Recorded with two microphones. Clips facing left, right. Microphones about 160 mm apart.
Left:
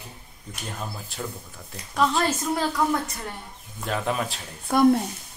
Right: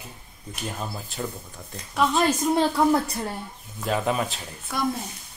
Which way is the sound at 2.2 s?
20° right (ahead or behind).